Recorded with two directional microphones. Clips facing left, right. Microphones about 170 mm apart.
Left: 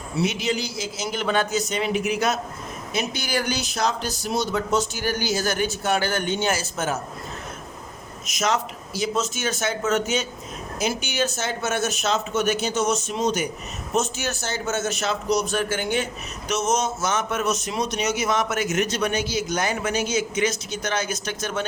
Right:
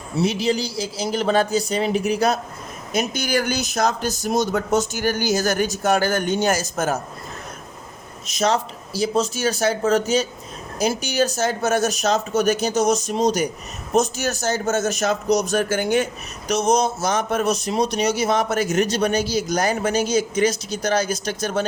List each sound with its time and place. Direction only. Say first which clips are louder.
0.2 s a man's voice: right 4 dB; 30° right (ahead or behind)
8.3 s a man's voice: right 4 dB; 30° right (ahead or behind)